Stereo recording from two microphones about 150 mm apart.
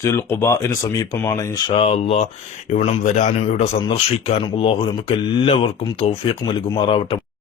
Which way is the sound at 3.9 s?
40° left (ahead or behind).